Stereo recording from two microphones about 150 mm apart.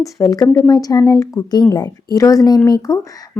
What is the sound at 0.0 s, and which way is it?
Speech, 25° left (ahead or behind).